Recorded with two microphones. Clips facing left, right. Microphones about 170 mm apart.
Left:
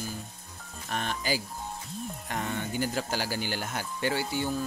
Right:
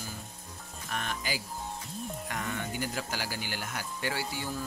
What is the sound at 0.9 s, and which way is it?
Speech, 35° left (ahead or behind).